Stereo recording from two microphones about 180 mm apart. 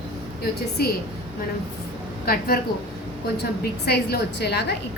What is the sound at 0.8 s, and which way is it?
Speech, 60° left (ahead or behind).